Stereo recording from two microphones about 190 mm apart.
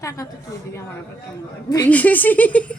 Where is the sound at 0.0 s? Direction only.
15° left (ahead or behind).